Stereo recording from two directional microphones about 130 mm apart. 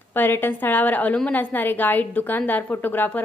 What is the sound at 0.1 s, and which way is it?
A woman's voice, 15° left (ahead or behind).